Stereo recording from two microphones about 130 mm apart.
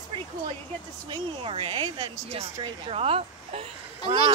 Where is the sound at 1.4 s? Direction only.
40° right (ahead or behind).